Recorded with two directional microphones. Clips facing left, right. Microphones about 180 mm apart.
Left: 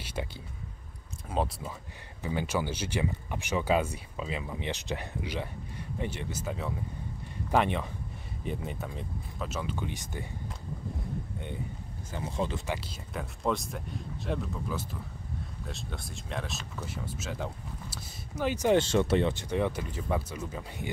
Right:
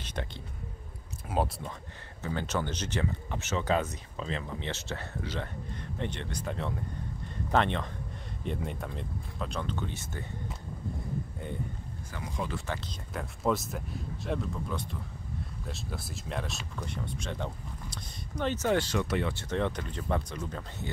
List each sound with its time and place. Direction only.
0.0 s a sound: 10° left (ahead or behind)
1.3 s speech: centre (ahead or behind)
2.2 s speech: 10° left (ahead or behind)
11.3 s speech: centre (ahead or behind)
12.1 s speech: 25° left (ahead or behind)
12.6 s speech: 10° left (ahead or behind)
13.1 s speech: centre (ahead or behind); by 18.9 s 15° left (ahead or behind)
18.9 s speech: 25° left (ahead or behind)
19.5 s speech: 10° left (ahead or behind)